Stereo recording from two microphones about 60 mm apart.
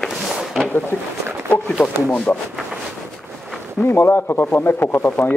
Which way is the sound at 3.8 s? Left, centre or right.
Left.